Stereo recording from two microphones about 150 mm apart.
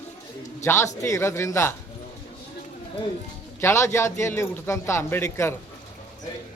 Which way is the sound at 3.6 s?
20° left (ahead or behind).